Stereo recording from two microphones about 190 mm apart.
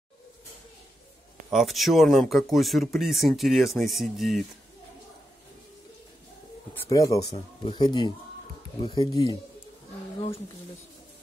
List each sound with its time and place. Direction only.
1.5 s speech: centre (ahead or behind)
6.7 s speech: 15° left (ahead or behind)